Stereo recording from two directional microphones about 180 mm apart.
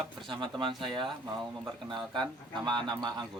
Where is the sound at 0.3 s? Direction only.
25° right (ahead or behind).